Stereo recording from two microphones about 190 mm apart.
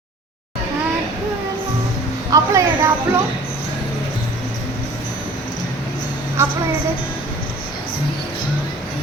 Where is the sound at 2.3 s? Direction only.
15° right (ahead or behind).